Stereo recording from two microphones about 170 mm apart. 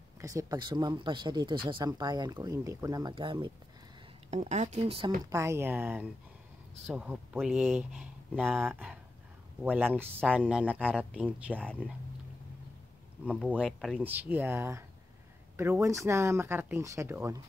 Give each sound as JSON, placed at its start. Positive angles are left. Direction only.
{"t": 0.2, "sound": "speech", "side_deg": -20}
{"t": 4.3, "sound": "speech", "side_deg": -45}
{"t": 5.2, "sound": "speech", "side_deg": -15}
{"t": 13.2, "sound": "speech", "side_deg": -5}
{"t": 14.0, "sound": "speech", "side_deg": -10}